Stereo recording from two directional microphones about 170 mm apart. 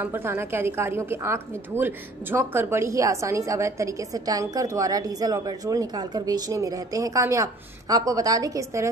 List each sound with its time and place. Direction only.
0.0 s a woman's voice: 15° right (ahead or behind)